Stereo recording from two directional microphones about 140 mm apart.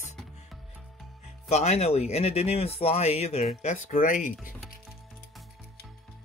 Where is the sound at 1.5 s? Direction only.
50° left (ahead or behind); by 4.3 s 65° left (ahead or behind).